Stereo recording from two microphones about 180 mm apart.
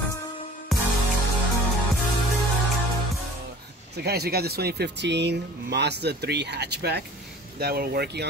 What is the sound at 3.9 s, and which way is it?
Speech, 60° right (ahead or behind).